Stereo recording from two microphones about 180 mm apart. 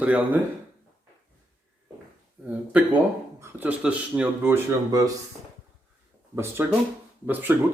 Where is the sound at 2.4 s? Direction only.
10° right (ahead or behind).